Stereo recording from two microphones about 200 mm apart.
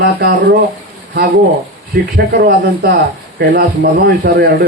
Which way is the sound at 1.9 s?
55° right (ahead or behind).